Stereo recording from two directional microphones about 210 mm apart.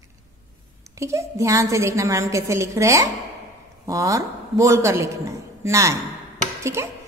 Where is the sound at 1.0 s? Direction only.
15° right (ahead or behind).